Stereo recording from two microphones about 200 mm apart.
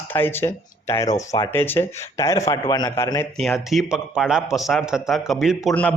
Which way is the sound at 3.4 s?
Centre (ahead or behind).